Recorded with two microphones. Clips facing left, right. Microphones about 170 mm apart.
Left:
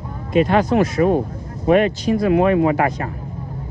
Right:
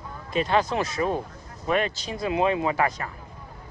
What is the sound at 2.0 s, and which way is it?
Speech, 25° right (ahead or behind).